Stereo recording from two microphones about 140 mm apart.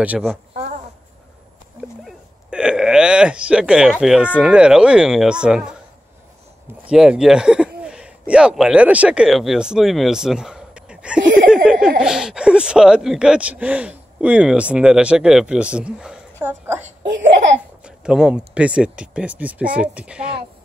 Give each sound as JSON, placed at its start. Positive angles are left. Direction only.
{"t": 1.8, "sound": "a sound", "side_deg": -5}
{"t": 4.0, "sound": "speech", "side_deg": -5}
{"t": 6.9, "sound": "speech", "side_deg": -5}
{"t": 16.4, "sound": "speech", "side_deg": -15}
{"t": 16.8, "sound": "speech", "side_deg": -55}
{"t": 17.8, "sound": "speech", "side_deg": -5}